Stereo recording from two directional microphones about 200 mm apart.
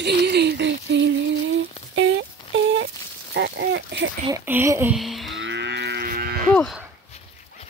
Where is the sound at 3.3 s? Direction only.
55° right (ahead or behind).